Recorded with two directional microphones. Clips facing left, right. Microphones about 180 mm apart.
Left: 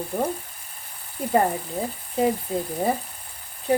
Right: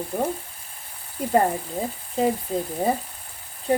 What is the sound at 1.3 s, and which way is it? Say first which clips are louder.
Speech: right 1 dB; centre (ahead or behind).